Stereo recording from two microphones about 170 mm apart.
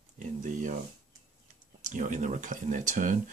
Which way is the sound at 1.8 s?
45° right (ahead or behind).